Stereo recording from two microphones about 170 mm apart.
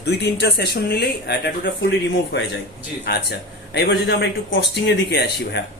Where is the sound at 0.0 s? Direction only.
85° left.